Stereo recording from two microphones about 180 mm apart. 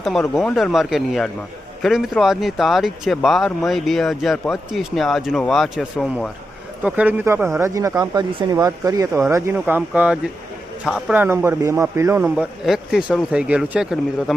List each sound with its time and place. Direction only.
0.0 s speech: centre (ahead or behind)
6.8 s speech: 10° right (ahead or behind)